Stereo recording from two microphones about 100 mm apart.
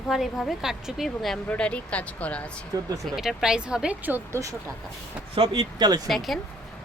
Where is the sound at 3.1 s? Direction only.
5° right (ahead or behind).